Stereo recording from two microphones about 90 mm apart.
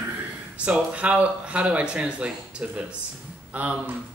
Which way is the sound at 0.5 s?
15° right (ahead or behind).